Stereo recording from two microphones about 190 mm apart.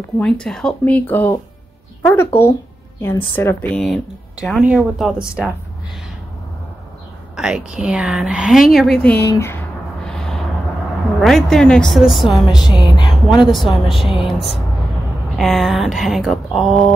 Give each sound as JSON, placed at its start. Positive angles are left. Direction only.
{"t": 0.2, "sound": "a woman's voice", "side_deg": 5}
{"t": 7.3, "sound": "a woman's voice", "side_deg": -5}
{"t": 10.0, "sound": "a sound", "side_deg": 5}
{"t": 11.1, "sound": "a woman's voice", "side_deg": 0}
{"t": 12.7, "sound": "speech", "side_deg": 25}
{"t": 13.4, "sound": "a woman's voice", "side_deg": 0}
{"t": 15.3, "sound": "a woman's voice", "side_deg": 0}